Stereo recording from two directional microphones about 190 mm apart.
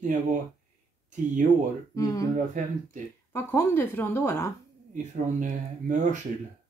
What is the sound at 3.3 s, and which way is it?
A woman's voice, 10° left (ahead or behind).